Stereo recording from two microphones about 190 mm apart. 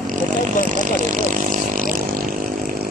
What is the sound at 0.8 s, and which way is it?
Speech, 45° right (ahead or behind).